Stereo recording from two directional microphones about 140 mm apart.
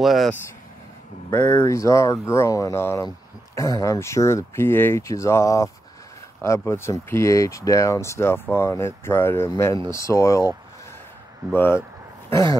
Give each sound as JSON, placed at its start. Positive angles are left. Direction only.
{"t": 0.0, "sound": "speech", "side_deg": 0}
{"t": 1.6, "sound": "speech", "side_deg": 20}
{"t": 11.5, "sound": "speech", "side_deg": 15}